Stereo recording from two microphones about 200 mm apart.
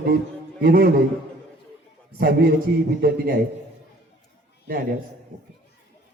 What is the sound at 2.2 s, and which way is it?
Speech, 55° right (ahead or behind).